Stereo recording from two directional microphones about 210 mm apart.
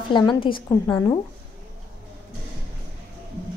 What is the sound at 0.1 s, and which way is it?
Speech, 20° left (ahead or behind).